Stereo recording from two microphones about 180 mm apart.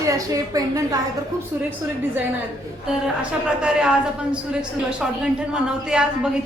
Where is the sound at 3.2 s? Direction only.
5° right (ahead or behind).